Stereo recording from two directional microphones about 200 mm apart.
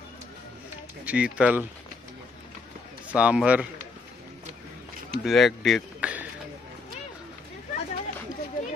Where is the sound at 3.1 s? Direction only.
5° right (ahead or behind).